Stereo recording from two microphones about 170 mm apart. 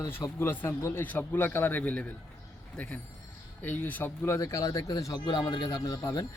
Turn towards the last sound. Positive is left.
turn(degrees=20)  # may be behind; listen again after turning